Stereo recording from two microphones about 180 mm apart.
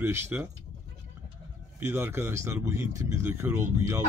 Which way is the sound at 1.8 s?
15° right (ahead or behind).